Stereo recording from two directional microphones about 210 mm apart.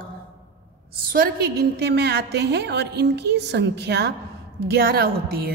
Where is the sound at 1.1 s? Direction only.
45° right (ahead or behind).